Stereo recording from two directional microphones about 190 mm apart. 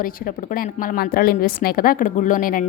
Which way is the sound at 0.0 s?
50° left (ahead or behind).